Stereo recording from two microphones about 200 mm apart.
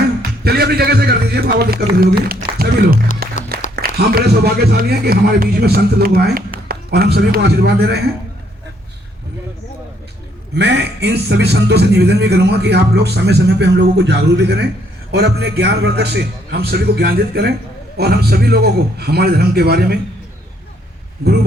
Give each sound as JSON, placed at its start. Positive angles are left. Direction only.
{"t": 0.2, "sound": "a man's voice", "side_deg": -50}
{"t": 3.2, "sound": "music", "side_deg": -50}
{"t": 3.8, "sound": "a man's voice", "side_deg": -50}
{"t": 10.5, "sound": "a man's voice", "side_deg": -60}